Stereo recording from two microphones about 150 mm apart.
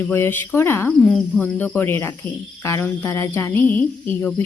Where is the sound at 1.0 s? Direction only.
5° left (ahead or behind).